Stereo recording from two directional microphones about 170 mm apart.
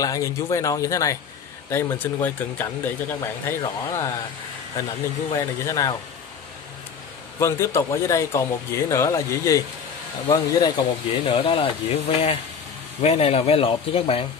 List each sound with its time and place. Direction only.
0.0 s speech: 20° left (ahead or behind)
5.3 s speech: 25° left (ahead or behind)
7.3 s speech: 15° left (ahead or behind); by 14.2 s 35° left (ahead or behind)